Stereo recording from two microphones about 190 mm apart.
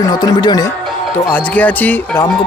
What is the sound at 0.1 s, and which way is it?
Speech, 20° left (ahead or behind).